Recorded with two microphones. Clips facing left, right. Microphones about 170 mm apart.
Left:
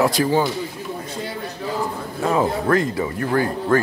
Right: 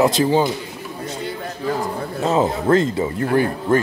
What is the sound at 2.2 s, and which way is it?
Speech, 25° right (ahead or behind).